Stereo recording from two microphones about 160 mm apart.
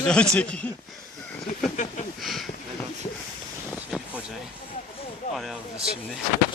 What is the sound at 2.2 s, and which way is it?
Speech, centre (ahead or behind).